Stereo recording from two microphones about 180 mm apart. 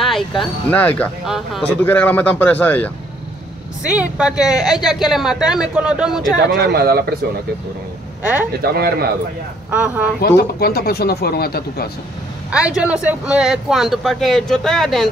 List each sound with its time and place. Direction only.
0.4 s a man's voice: 10° left (ahead or behind)
1.2 s speech: centre (ahead or behind)
1.8 s a man's voice: 10° left (ahead or behind)
3.8 s speech: 5° right (ahead or behind)
6.5 s a man's voice: 65° right (ahead or behind)
8.2 s speech: 5° right (ahead or behind)
8.6 s a man's voice: 60° right (ahead or behind)
9.7 s speech: 10° right (ahead or behind)
10.2 s speech: 65° left (ahead or behind)
12.4 s speech: 5° right (ahead or behind)